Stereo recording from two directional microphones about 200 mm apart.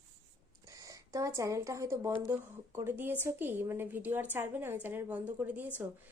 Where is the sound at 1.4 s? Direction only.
15° right (ahead or behind).